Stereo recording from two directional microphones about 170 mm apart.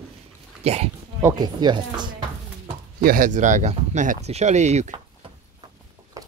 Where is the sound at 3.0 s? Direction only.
55° right (ahead or behind).